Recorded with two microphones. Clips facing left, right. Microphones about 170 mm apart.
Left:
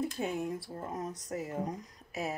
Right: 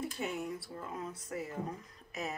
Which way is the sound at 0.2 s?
50° left (ahead or behind).